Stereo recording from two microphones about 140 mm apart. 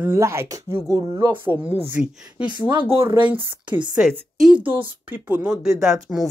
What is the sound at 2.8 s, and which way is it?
Speech, 45° right (ahead or behind).